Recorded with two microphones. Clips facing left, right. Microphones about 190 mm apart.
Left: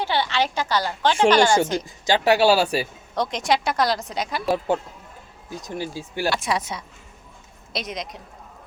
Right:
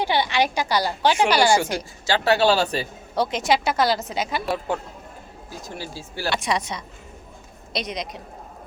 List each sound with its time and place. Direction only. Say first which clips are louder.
0.0 s a woman's voice: right 2 dB; 15° right (ahead or behind)
2.0 s speech: left 2 dB; 15° left (ahead or behind)
3.2 s a woman's voice: right 1 dB; 5° right (ahead or behind)
5.5 s speech: left 5 dB; 20° left (ahead or behind)
6.3 s a woman's voice: even; 5° left (ahead or behind)